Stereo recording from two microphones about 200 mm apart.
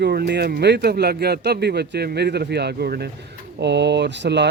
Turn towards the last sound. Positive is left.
turn(degrees=-60)  # may be behind; listen again after turning